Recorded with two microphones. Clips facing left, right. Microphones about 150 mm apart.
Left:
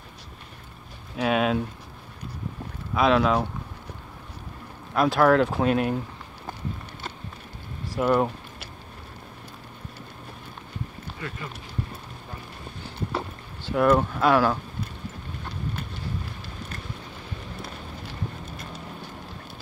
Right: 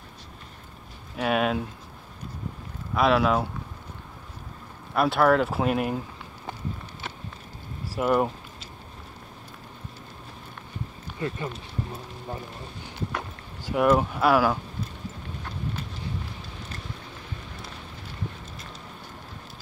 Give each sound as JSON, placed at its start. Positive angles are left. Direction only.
{"t": 1.1, "sound": "speech", "side_deg": 0}
{"t": 2.9, "sound": "speech", "side_deg": 0}
{"t": 4.9, "sound": "speech", "side_deg": -5}
{"t": 7.9, "sound": "speech", "side_deg": -5}
{"t": 11.1, "sound": "speech", "side_deg": -25}
{"t": 13.7, "sound": "speech", "side_deg": -10}